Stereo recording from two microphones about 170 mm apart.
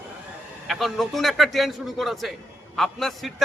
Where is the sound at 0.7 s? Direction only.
Centre (ahead or behind).